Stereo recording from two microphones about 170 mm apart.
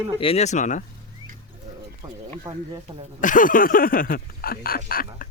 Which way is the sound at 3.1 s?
50° left (ahead or behind).